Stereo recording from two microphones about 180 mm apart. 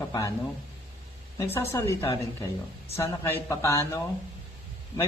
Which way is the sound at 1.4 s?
15° left (ahead or behind).